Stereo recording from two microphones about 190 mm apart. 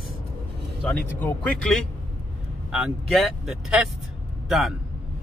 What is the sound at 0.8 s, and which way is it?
Speech, 5° left (ahead or behind).